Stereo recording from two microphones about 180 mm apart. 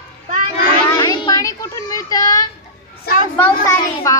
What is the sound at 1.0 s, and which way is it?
A woman's voice, 20° left (ahead or behind).